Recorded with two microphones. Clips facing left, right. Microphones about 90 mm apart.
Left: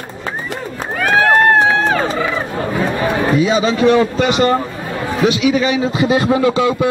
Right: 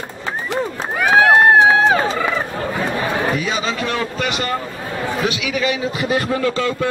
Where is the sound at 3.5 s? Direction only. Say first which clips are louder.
Left 9 dB; 20° left (ahead or behind).